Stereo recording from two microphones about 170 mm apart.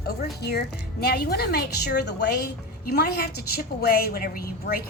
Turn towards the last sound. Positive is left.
turn(degrees=60)  # may be behind; listen again after turning